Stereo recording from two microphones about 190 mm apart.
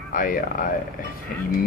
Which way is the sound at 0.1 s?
45° left (ahead or behind).